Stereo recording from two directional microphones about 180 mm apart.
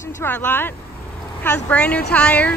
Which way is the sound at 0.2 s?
10° left (ahead or behind).